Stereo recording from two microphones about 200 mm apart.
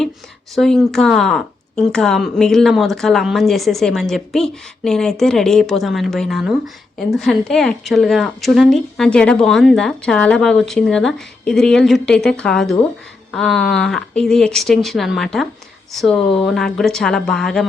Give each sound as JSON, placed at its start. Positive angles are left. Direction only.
{"t": 0.5, "sound": "speech", "side_deg": 0}